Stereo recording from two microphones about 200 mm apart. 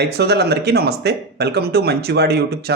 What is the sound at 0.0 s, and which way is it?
Speech, 55° right (ahead or behind).